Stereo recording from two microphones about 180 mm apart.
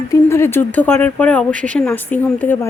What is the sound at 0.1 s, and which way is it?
Speech, 15° left (ahead or behind).